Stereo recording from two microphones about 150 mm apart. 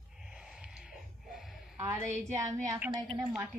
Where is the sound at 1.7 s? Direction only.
15° right (ahead or behind).